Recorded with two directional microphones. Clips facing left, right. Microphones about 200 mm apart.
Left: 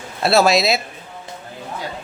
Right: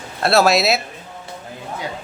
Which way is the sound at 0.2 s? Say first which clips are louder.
Even; centre (ahead or behind).